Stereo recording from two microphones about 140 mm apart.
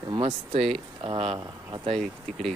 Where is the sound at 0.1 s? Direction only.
35° right (ahead or behind).